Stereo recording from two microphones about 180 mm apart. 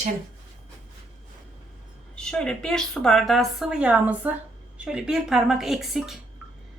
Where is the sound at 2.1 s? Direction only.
5° left (ahead or behind).